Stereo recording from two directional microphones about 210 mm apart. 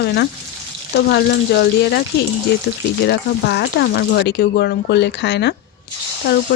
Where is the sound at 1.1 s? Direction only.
50° left (ahead or behind).